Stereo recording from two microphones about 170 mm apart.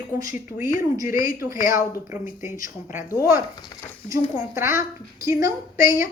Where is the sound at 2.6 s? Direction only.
15° right (ahead or behind).